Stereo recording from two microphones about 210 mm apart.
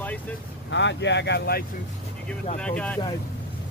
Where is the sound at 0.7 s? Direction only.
60° left (ahead or behind).